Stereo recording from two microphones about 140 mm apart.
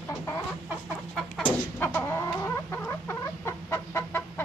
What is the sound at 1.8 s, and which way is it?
Chicken, 15° left (ahead or behind).